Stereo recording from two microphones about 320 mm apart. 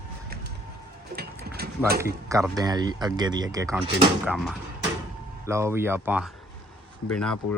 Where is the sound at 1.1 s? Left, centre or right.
Right.